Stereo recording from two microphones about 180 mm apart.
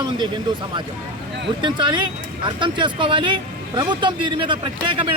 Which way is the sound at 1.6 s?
25° right (ahead or behind).